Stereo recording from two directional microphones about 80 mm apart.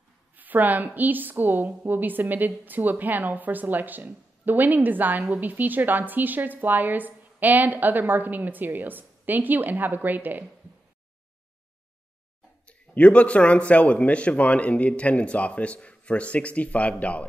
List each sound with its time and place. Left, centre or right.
0.4 s a woman's voice: right
12.6 s a man's voice: centre